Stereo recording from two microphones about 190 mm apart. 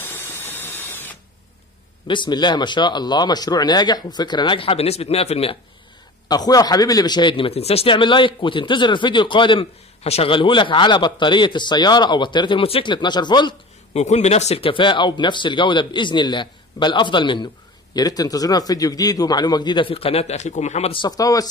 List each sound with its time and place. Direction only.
0.0 s a sound: 10° left (ahead or behind)
2.0 s a man's voice: 25° left (ahead or behind)
6.2 s a man's voice: 20° left (ahead or behind)
13.9 s a man's voice: 35° left (ahead or behind); by 21.5 s 20° left (ahead or behind)